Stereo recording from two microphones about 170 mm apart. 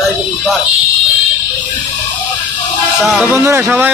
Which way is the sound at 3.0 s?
10° right (ahead or behind).